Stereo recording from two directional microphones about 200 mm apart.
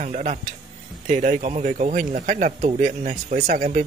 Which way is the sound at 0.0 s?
40° right (ahead or behind).